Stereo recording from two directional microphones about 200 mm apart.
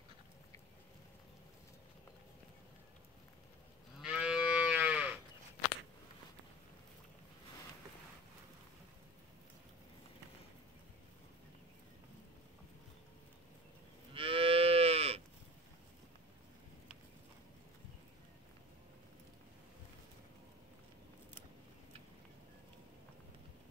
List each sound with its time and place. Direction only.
4.0 s moo: 5° right (ahead or behind)
14.1 s moo: 25° right (ahead or behind)